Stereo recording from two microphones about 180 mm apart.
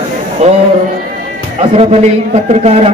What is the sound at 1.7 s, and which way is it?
Speech, 35° right (ahead or behind).